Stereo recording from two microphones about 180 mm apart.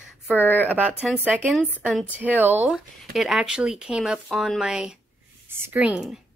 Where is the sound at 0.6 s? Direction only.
10° right (ahead or behind).